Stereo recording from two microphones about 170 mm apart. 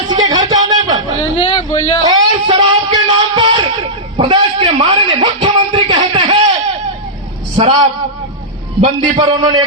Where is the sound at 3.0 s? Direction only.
30° right (ahead or behind).